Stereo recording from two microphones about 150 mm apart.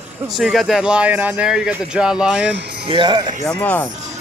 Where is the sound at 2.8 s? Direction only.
35° right (ahead or behind).